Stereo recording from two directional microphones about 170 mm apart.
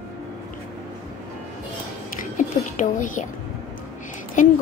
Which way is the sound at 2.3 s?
45° left (ahead or behind).